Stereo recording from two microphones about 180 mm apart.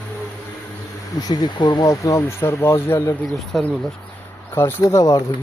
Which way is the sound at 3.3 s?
Centre (ahead or behind).